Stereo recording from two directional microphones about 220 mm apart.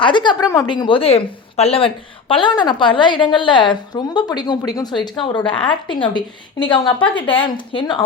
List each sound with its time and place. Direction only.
0.0 s a woman's voice: 20° left (ahead or behind)